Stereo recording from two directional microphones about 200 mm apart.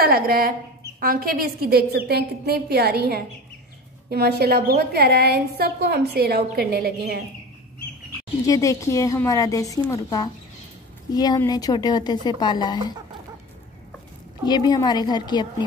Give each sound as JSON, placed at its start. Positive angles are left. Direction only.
{"t": 0.0, "sound": "a woman's voice", "side_deg": -50}
{"t": 8.5, "sound": "a woman's voice", "side_deg": 15}
{"t": 14.4, "sound": "speech", "side_deg": 20}